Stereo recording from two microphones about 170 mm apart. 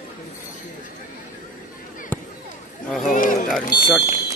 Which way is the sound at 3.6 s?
55° left (ahead or behind).